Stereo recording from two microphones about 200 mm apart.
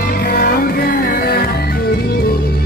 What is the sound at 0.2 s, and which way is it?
Music, 45° left (ahead or behind).